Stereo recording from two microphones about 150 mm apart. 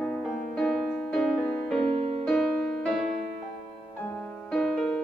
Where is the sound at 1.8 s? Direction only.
40° right (ahead or behind).